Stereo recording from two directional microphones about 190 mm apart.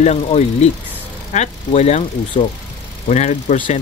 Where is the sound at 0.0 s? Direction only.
35° left (ahead or behind).